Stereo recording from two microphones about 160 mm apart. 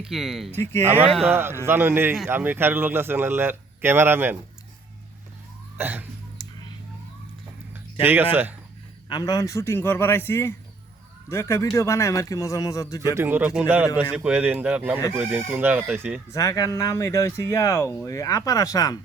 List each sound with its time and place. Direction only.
0.0 s speech: centre (ahead or behind)
0.5 s speech: 15° left (ahead or behind)
1.3 s speech: 15° right (ahead or behind)
5.7 s speech: 10° right (ahead or behind)
8.0 s speech: 10° right (ahead or behind)
9.0 s speech: 25° left (ahead or behind)
13.1 s speech: 15° right (ahead or behind)
16.3 s speech: 20° left (ahead or behind)